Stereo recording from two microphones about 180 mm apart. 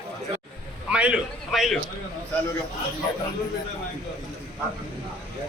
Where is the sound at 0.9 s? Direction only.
5° right (ahead or behind).